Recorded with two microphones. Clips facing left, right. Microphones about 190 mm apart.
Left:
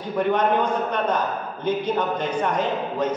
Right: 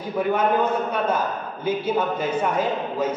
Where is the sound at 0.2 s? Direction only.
5° right (ahead or behind).